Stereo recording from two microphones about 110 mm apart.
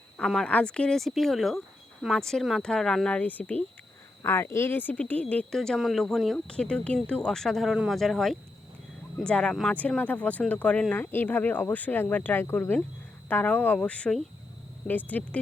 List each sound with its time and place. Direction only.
0.2 s speech: 5° left (ahead or behind)